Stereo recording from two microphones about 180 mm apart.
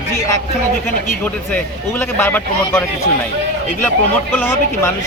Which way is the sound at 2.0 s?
10° left (ahead or behind).